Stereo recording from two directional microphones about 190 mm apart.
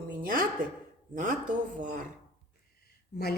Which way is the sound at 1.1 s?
45° right (ahead or behind).